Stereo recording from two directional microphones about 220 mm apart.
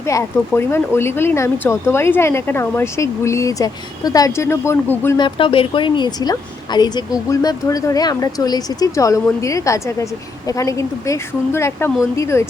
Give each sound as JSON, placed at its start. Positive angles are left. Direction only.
{"t": 0.0, "sound": "speech", "side_deg": 15}
{"t": 5.2, "sound": "speech", "side_deg": 25}